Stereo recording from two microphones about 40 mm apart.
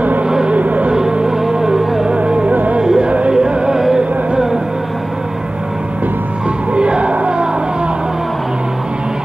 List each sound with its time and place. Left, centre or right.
0.5 s music: right
1.5 s music: centre
2.0 s music: right
2.5 s music: right
2.8 s music: centre
3.1 s music: right; by 4.6 s centre
6.7 s music: right